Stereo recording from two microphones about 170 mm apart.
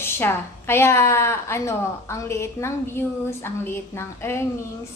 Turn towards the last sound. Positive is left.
turn(degrees=15)  # may be behind; listen again after turning